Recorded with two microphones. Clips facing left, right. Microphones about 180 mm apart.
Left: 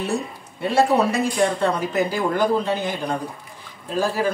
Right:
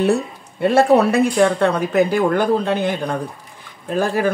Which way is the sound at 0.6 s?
60° right (ahead or behind).